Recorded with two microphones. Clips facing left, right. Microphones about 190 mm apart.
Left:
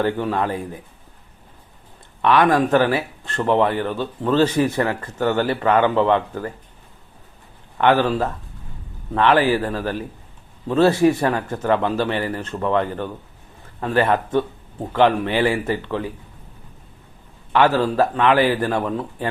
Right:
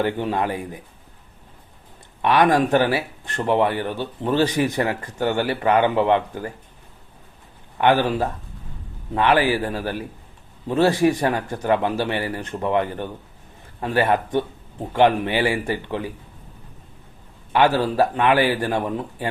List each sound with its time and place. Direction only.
0.0 s speech: 20° right (ahead or behind)
2.2 s speech: 15° right (ahead or behind)
7.8 s a man's voice: 15° right (ahead or behind)
17.5 s speech: 15° right (ahead or behind)